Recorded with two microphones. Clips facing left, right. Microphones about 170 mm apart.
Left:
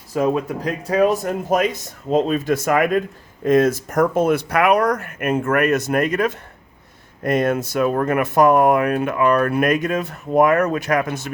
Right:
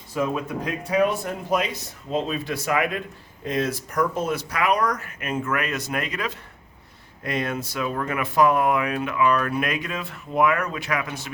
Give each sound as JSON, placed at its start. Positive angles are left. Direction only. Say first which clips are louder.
{"t": 0.1, "sound": "speech", "louder": "left 6 dB", "side_deg": 40}